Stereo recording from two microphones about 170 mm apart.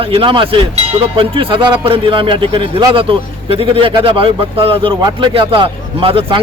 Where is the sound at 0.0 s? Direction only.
30° right (ahead or behind).